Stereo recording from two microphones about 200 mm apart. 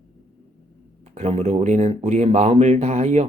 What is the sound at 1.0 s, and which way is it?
A man's voice, 35° right (ahead or behind).